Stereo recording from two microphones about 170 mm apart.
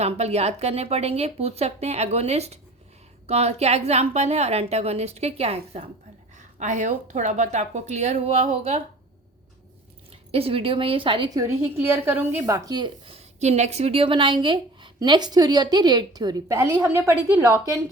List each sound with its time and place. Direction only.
0.0 s a woman's voice: 40° right (ahead or behind)
10.1 s speech: 35° right (ahead or behind)
11.6 s a woman's voice: 15° right (ahead or behind)